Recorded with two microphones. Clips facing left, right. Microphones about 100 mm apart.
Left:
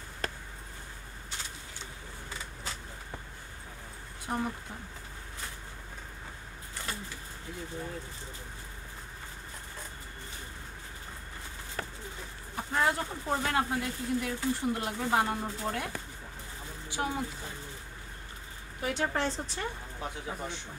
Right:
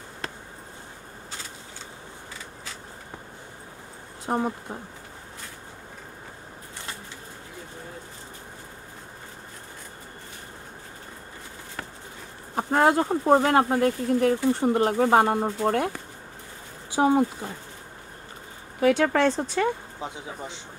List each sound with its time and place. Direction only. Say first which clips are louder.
4.3 s speech: right 7 dB; 30° right (ahead or behind)
12.5 s speech: right 9 dB; 55° right (ahead or behind)
17.0 s speech: right 13 dB; 55° right (ahead or behind)
18.8 s speech: right 11 dB; 90° right; by 19.7 s 65° right (ahead or behind)
20.0 s speech: right 2 dB; 20° right (ahead or behind)